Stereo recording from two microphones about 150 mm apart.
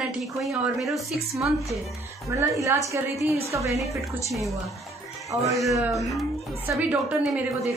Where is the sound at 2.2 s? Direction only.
20° right (ahead or behind).